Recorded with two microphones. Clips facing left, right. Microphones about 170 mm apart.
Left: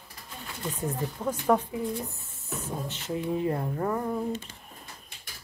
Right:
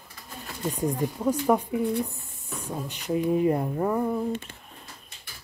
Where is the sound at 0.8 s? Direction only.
10° right (ahead or behind).